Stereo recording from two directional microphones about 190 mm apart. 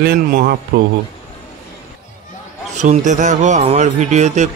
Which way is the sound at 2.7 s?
40° right (ahead or behind).